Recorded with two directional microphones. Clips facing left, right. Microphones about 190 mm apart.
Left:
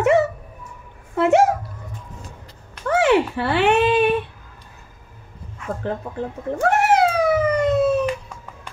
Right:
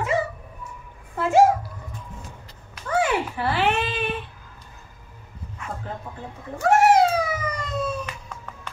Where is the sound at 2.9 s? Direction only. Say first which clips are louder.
Left 6 dB; 75° left (ahead or behind).